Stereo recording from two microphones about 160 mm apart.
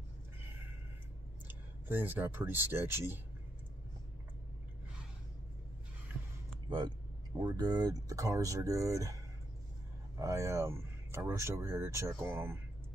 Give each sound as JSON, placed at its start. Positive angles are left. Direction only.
{"t": 1.5, "sound": "speech", "side_deg": -10}
{"t": 7.3, "sound": "speech", "side_deg": -25}
{"t": 10.1, "sound": "speech", "side_deg": -20}